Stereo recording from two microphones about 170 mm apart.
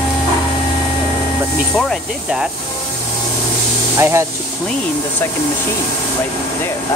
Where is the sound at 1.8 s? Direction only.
Centre (ahead or behind).